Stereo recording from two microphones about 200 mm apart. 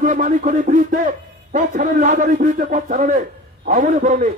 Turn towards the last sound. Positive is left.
turn(degrees=-40)  # may be behind; listen again after turning